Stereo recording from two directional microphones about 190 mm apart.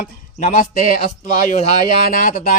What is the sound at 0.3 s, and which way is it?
Speech, 40° left (ahead or behind).